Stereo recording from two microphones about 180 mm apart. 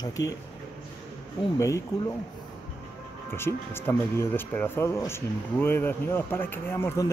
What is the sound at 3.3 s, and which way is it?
Speech, 15° left (ahead or behind).